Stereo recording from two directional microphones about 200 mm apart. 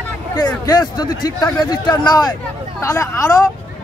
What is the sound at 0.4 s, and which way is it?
Speech, 20° left (ahead or behind).